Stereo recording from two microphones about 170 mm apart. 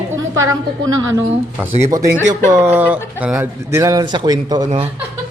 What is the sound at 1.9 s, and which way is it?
Speech, 20° right (ahead or behind).